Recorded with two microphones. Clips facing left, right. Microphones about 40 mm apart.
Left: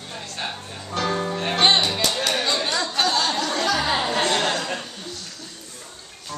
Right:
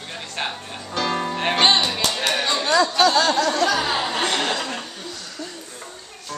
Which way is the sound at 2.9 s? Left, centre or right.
Right.